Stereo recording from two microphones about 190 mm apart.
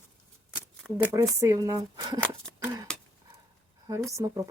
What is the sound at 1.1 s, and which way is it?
Speech, 15° right (ahead or behind).